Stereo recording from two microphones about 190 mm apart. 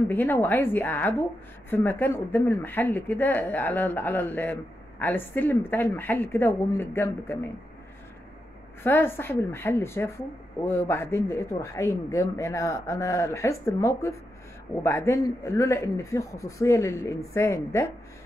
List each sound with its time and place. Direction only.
0.1 s speech: 10° left (ahead or behind)
8.8 s speech: 10° left (ahead or behind)